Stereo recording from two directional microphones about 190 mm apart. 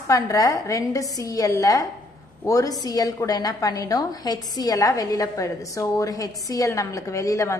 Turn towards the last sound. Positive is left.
turn(degrees=15)  # may be behind; listen again after turning